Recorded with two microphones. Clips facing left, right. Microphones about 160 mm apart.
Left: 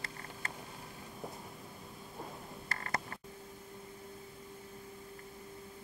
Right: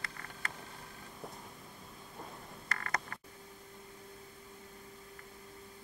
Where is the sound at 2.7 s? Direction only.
25° left (ahead or behind).